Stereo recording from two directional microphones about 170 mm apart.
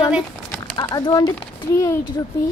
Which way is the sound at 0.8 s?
25° left (ahead or behind).